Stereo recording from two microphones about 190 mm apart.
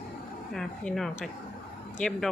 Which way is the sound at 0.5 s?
Centre (ahead or behind).